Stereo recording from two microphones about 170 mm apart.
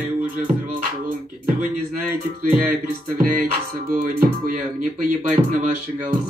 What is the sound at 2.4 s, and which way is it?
Music, 55° right (ahead or behind).